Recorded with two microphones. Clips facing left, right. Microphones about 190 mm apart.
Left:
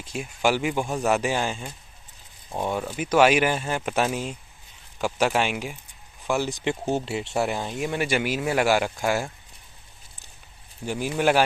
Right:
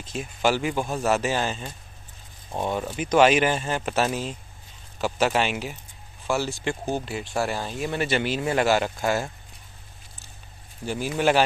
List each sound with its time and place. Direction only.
0.0 s speech: 10° left (ahead or behind)
2.5 s speech: 10° right (ahead or behind)
3.0 s speech: 10° left (ahead or behind)
10.9 s speech: 15° left (ahead or behind)